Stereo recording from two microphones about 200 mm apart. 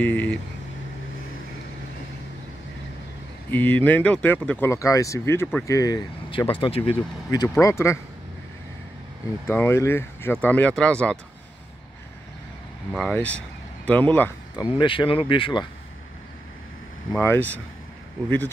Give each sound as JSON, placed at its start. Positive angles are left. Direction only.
{"t": 0.0, "sound": "speech", "side_deg": 10}
{"t": 3.4, "sound": "speech", "side_deg": 10}
{"t": 9.5, "sound": "speech", "side_deg": 10}
{"t": 12.9, "sound": "speech", "side_deg": 5}
{"t": 14.5, "sound": "speech", "side_deg": 25}
{"t": 17.1, "sound": "speech", "side_deg": 10}